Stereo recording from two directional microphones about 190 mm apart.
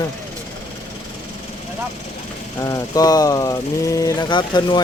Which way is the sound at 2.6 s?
20° left (ahead or behind).